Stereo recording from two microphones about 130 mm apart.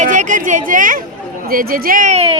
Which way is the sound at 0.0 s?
80° right.